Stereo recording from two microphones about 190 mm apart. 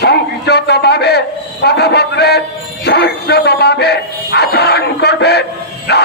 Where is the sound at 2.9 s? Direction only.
60° left (ahead or behind).